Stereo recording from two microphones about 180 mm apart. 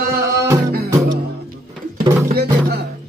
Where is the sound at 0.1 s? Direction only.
15° right (ahead or behind).